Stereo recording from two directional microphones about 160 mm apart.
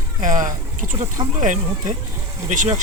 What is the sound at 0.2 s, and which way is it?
Speech, 55° right (ahead or behind).